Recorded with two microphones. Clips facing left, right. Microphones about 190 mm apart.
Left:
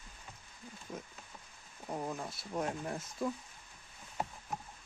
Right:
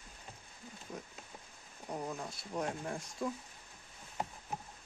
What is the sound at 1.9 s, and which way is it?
Speech, centre (ahead or behind).